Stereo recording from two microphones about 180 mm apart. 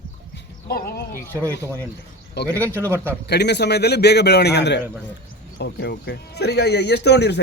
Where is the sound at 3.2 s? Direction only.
70° left (ahead or behind).